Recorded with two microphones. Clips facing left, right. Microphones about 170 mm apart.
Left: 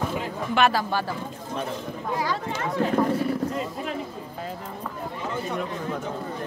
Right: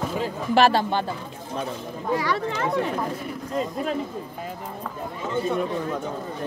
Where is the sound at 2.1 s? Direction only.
70° right (ahead or behind).